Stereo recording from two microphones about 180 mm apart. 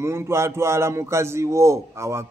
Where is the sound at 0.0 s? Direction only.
15° right (ahead or behind).